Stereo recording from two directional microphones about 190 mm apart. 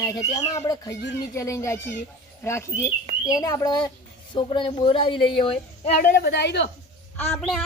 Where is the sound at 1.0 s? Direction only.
65° left (ahead or behind).